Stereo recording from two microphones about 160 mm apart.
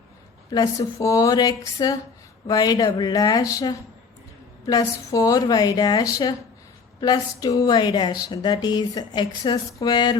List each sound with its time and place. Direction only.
0.5 s speech: 25° left (ahead or behind)